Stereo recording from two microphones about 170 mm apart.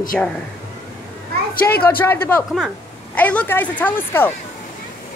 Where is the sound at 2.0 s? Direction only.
10° left (ahead or behind).